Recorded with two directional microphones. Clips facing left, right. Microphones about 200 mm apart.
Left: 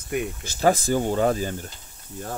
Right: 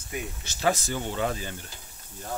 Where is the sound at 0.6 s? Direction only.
45° left (ahead or behind).